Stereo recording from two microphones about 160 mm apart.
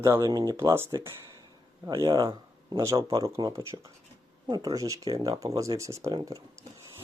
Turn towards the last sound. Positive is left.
turn(degrees=-20)  # may be behind; listen again after turning